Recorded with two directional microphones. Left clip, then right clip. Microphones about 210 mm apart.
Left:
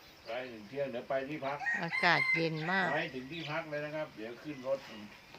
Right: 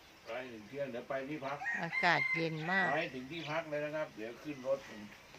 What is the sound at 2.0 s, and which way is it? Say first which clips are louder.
Speech: left 2 dB; 10° left (ahead or behind).